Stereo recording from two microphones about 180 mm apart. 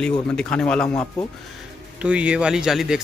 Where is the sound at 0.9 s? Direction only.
20° left (ahead or behind).